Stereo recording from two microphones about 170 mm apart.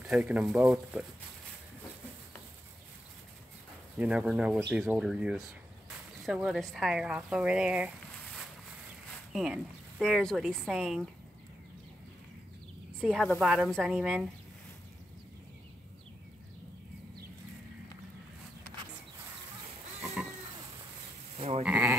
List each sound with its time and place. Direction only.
0.1 s speech: 10° right (ahead or behind)
4.0 s speech: 10° right (ahead or behind)
9.3 s speech: centre (ahead or behind)
13.0 s speech: centre (ahead or behind)
20.2 s a sound: 5° right (ahead or behind)
21.4 s sheep: 35° right (ahead or behind)
21.6 s speech: 5° right (ahead or behind)